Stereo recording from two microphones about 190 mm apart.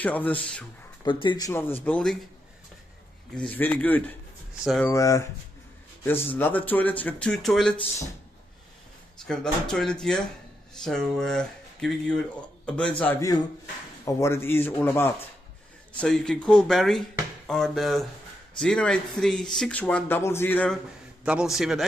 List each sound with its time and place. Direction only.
0.0 s speech: 10° left (ahead or behind)
1.0 s speech: 25° left (ahead or behind)
1.5 s speech: 10° left (ahead or behind)
3.4 s speech: 10° left (ahead or behind)
4.9 s speech: 15° left (ahead or behind)
9.2 s speech: 5° left (ahead or behind)
21.2 s speech: 5° right (ahead or behind)